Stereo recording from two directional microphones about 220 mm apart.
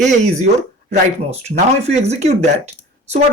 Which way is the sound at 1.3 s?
30° right (ahead or behind).